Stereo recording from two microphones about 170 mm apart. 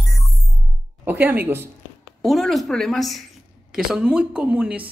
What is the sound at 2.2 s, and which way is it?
Speech, centre (ahead or behind).